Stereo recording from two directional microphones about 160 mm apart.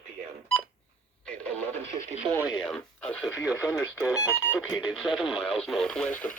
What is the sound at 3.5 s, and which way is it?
Speech, 20° left (ahead or behind).